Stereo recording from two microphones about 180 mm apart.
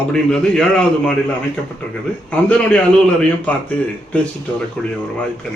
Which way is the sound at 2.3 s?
5° left (ahead or behind).